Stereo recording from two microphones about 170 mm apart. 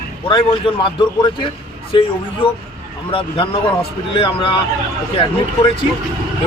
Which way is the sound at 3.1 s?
30° left (ahead or behind).